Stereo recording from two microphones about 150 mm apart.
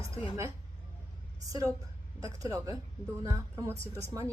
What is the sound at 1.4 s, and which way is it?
Speech, 20° right (ahead or behind).